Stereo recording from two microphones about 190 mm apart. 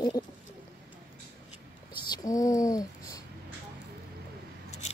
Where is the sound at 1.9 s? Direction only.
20° left (ahead or behind).